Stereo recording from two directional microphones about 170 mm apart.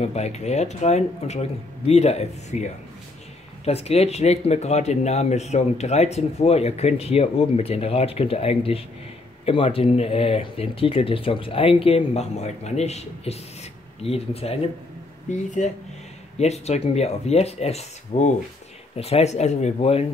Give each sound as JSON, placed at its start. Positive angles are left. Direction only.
{"t": 0.0, "sound": "speech", "side_deg": 40}